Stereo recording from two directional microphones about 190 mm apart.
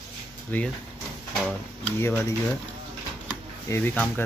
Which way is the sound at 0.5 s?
10° left (ahead or behind).